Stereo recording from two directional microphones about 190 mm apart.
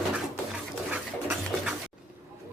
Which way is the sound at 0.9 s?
5° right (ahead or behind).